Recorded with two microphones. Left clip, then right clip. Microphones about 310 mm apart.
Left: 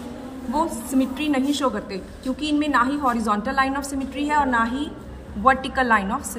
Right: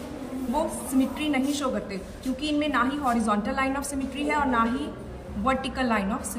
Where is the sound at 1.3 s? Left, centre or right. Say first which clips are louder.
Left 4 dB; centre.